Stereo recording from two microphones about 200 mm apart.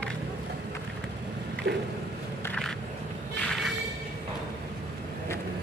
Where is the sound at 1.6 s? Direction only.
60° right (ahead or behind).